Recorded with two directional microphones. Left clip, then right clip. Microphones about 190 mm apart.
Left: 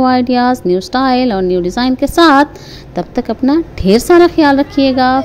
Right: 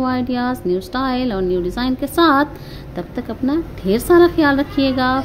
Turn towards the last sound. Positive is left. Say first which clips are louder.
# left 7 dB
turn(degrees=30)  # may be behind; listen again after turning